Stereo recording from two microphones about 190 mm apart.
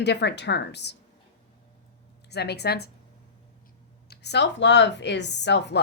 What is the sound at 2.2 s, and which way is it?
Speech, 60° left (ahead or behind).